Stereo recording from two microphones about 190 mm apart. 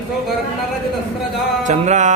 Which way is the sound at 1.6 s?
40° right (ahead or behind).